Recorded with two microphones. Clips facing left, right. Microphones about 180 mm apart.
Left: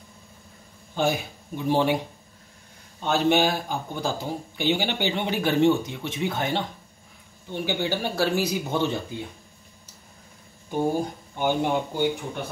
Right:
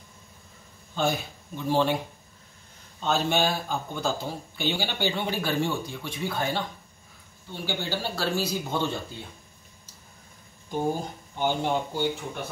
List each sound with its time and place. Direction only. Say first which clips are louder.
0.9 s speech: left 2 dB; 15° left (ahead or behind)
3.0 s speech: left 4 dB; 15° left (ahead or behind)
10.7 s speech: left 3 dB; 15° left (ahead or behind)